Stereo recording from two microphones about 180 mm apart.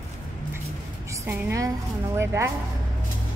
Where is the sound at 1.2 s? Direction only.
15° right (ahead or behind).